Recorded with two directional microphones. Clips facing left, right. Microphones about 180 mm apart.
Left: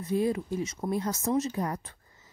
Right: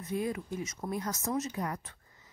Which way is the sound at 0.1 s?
30° left (ahead or behind).